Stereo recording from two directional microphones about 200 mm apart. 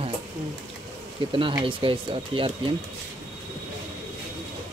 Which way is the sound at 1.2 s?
25° right (ahead or behind).